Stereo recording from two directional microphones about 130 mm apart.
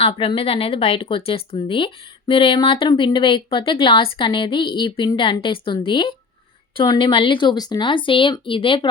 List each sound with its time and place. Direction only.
0.0 s speech: 40° left (ahead or behind)